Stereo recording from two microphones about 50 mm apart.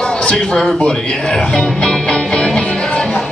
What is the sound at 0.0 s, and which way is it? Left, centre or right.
A man's voice, centre.